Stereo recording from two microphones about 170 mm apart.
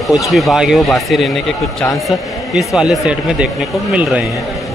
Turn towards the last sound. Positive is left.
turn(degrees=-5)  # may be behind; listen again after turning